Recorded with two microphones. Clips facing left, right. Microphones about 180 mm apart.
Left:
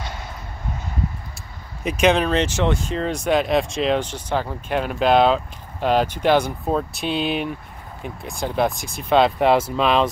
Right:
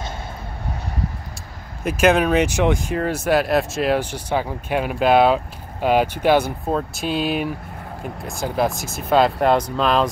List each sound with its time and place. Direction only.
1.9 s speech: 5° right (ahead or behind)